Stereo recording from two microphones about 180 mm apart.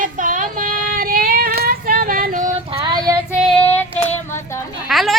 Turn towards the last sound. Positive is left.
turn(degrees=0)  # may be behind; listen again after turning